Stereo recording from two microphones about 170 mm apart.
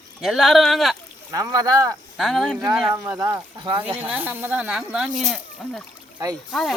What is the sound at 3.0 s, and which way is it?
Speech, 20° right (ahead or behind).